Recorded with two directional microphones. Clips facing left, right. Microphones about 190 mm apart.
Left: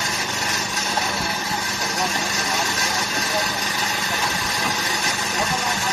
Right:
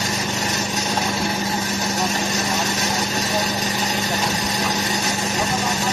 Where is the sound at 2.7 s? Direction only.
20° right (ahead or behind).